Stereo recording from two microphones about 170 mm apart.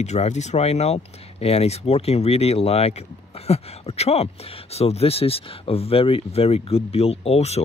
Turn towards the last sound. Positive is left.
turn(degrees=35)  # may be behind; listen again after turning